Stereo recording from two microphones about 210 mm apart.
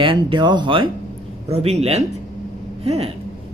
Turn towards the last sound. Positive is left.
turn(degrees=-30)  # may be behind; listen again after turning